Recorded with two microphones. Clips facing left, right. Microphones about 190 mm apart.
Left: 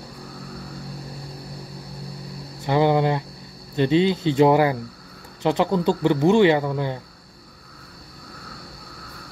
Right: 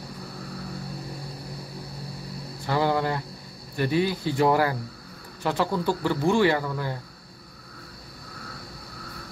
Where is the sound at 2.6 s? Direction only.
20° left (ahead or behind).